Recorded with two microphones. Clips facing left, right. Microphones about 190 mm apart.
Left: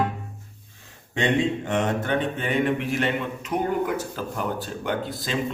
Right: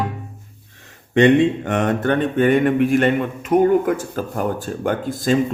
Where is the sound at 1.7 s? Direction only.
60° right (ahead or behind).